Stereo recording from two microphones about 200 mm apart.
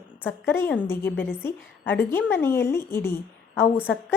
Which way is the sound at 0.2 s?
10° left (ahead or behind).